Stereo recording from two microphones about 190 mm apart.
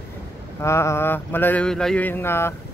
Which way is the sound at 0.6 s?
15° left (ahead or behind).